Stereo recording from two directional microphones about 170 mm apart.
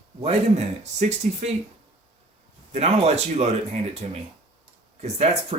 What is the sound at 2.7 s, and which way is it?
Speech, 40° right (ahead or behind).